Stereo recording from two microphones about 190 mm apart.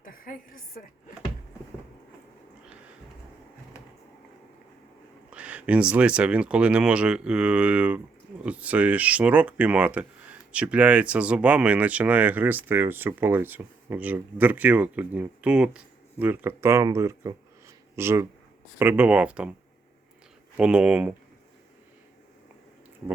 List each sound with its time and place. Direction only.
0.0 s a sound: 50° left (ahead or behind)
5.3 s speech: 5° right (ahead or behind)
20.6 s speech: 5° right (ahead or behind)